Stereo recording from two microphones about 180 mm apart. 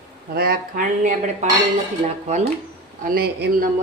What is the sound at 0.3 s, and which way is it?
Speech, 55° right (ahead or behind).